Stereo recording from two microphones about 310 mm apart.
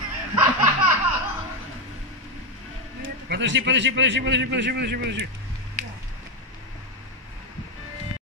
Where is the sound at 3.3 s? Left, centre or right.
Right.